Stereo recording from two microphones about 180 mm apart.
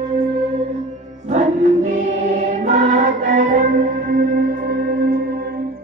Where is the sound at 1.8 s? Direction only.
40° right (ahead or behind); by 5.5 s 60° right (ahead or behind).